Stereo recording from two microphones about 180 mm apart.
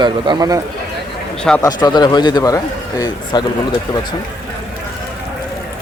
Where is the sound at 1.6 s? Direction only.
25° left (ahead or behind).